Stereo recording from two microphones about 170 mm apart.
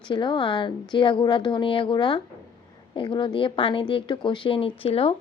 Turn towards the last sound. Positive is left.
turn(degrees=35)  # may be behind; listen again after turning